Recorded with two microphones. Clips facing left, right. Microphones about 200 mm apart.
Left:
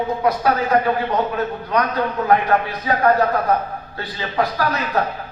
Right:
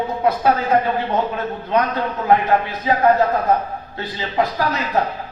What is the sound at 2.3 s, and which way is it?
A man's voice, 25° right (ahead or behind).